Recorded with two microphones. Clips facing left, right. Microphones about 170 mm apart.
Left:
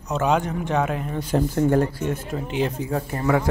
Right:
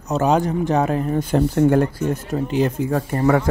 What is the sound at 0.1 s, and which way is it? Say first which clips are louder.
A man's voice: right 4 dB; 40° right (ahead or behind).